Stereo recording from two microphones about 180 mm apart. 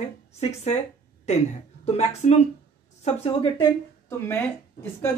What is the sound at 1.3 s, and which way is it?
Speech, 35° left (ahead or behind).